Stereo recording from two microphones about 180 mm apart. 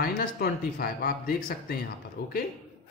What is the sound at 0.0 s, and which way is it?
Speech, 60° left (ahead or behind).